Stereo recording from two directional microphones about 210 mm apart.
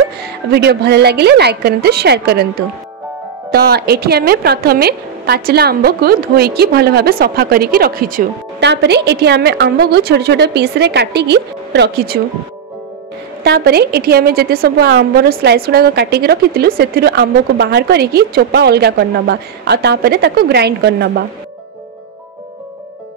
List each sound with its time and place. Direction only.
0.2 s a woman's voice: 50° right (ahead or behind)
3.5 s a woman's voice: 50° right (ahead or behind)
8.5 s a woman's voice: 55° right (ahead or behind)
13.4 s a woman's voice: 50° right (ahead or behind)